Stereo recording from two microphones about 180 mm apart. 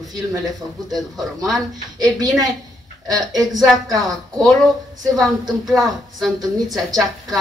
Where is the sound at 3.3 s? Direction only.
Centre (ahead or behind).